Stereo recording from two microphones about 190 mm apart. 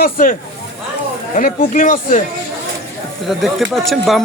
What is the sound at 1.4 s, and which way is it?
Speech, 45° left (ahead or behind).